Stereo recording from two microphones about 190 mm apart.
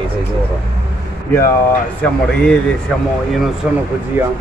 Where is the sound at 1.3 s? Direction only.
15° left (ahead or behind).